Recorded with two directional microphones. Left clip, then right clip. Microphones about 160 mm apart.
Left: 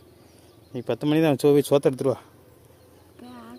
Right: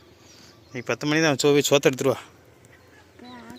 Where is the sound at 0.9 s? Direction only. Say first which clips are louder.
Even; 35° left (ahead or behind); by 2.2 s 5° left (ahead or behind).